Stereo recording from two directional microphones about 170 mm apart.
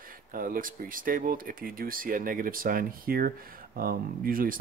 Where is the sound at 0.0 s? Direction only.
55° right (ahead or behind).